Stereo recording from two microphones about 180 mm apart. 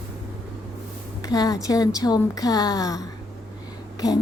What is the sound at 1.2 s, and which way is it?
A woman's voice, 20° left (ahead or behind).